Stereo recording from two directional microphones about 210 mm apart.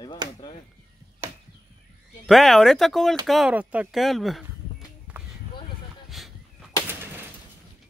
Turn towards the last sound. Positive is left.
turn(degrees=0)  # may be behind; listen again after turning